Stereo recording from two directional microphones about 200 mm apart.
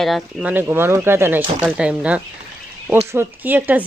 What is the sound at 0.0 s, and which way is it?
Speech, centre (ahead or behind).